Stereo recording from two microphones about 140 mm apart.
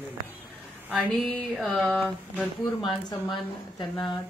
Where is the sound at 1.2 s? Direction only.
Centre (ahead or behind).